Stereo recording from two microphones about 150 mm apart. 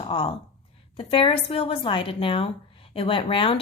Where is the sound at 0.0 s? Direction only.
35° left (ahead or behind).